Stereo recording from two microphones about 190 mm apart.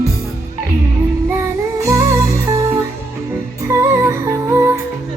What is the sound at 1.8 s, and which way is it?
Music, 15° right (ahead or behind).